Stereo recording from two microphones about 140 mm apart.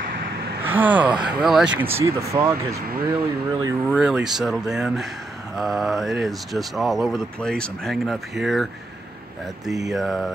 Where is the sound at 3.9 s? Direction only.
10° right (ahead or behind).